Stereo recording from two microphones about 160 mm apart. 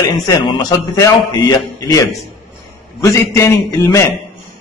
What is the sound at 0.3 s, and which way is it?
A man's voice, 25° left (ahead or behind).